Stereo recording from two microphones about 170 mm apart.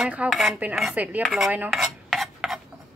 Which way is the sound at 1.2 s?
Centre (ahead or behind).